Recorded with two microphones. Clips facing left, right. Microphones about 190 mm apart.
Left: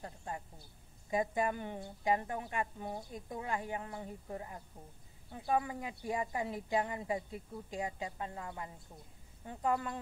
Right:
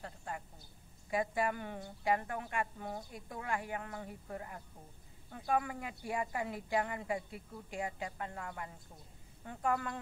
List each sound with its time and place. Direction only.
0.0 s speech: 20° left (ahead or behind)